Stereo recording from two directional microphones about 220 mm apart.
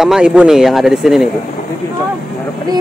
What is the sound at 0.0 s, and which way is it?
Speech, 5° right (ahead or behind).